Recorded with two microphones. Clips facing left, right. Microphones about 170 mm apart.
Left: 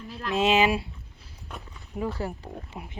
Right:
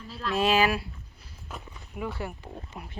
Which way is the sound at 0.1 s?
20° left (ahead or behind).